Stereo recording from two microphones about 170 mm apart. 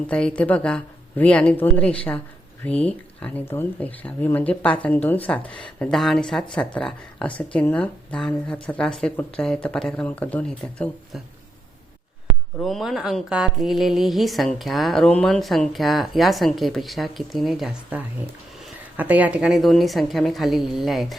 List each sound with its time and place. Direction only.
0.1 s speech: 5° left (ahead or behind)
12.5 s speech: centre (ahead or behind)